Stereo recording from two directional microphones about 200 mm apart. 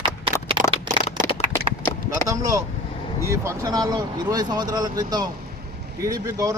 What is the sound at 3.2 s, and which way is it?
Speech, 15° right (ahead or behind).